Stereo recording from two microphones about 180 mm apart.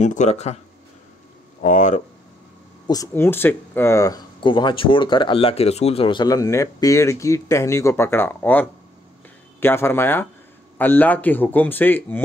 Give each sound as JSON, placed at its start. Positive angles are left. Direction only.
{"t": 0.0, "sound": "speech", "side_deg": 40}
{"t": 1.6, "sound": "speech", "side_deg": 45}
{"t": 2.9, "sound": "speech", "side_deg": 15}